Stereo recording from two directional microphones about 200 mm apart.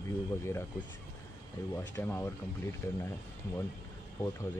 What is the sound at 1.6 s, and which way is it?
Speech, 15° left (ahead or behind).